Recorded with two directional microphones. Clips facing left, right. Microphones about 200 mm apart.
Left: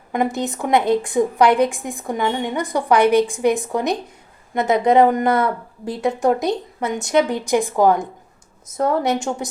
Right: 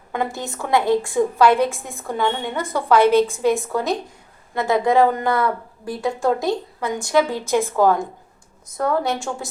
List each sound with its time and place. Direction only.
0.1 s a woman's voice: 15° left (ahead or behind)